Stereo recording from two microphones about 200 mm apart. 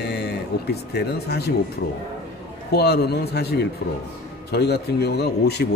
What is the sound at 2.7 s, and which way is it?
Speech, 55° left (ahead or behind).